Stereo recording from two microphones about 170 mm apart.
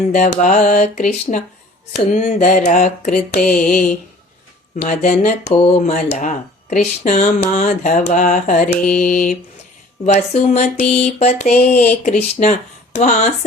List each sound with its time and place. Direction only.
0.1 s speech: 45° left (ahead or behind)
10.1 s a sound: 40° left (ahead or behind)
11.5 s speech: 60° left (ahead or behind)
12.0 s speech: 45° left (ahead or behind)